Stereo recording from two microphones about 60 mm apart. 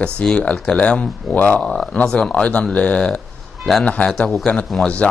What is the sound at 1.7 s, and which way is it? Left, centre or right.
Speech, centre.